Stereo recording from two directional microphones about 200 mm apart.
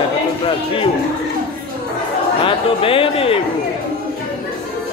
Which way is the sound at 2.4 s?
25° left (ahead or behind).